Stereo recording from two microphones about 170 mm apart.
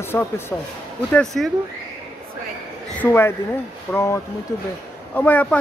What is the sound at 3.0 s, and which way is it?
Speech, 15° left (ahead or behind).